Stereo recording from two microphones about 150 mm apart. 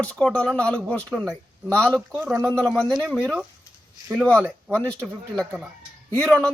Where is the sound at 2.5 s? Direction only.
5° left (ahead or behind).